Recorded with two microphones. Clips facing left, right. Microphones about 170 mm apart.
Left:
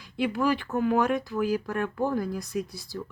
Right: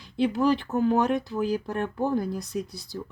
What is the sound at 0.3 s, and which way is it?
Speech, 20° right (ahead or behind).